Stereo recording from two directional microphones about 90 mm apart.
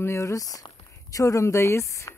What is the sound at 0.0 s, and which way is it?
Speech, 35° left (ahead or behind).